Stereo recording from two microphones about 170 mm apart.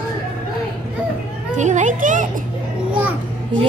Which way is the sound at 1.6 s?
45° right (ahead or behind).